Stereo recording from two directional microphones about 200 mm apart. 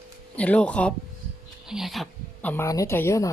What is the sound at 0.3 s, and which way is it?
Speech, 5° left (ahead or behind).